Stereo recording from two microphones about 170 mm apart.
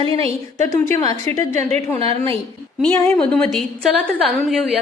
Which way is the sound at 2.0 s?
35° right (ahead or behind).